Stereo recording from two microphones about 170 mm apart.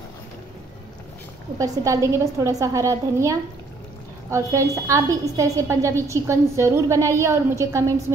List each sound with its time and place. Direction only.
1.6 s a woman's voice: 20° right (ahead or behind)